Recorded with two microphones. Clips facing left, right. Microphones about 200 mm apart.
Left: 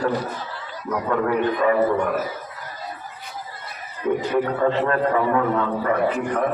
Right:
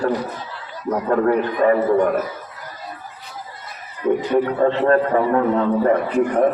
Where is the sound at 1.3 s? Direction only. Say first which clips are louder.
Right 2 dB; 45° right (ahead or behind).